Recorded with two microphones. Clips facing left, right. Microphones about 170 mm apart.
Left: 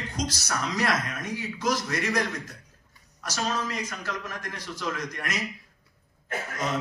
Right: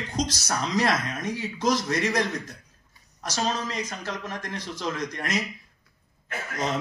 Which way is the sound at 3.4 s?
30° right (ahead or behind).